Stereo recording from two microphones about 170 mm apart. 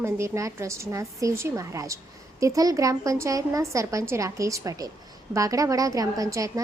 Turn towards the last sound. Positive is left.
turn(degrees=-20)  # may be behind; listen again after turning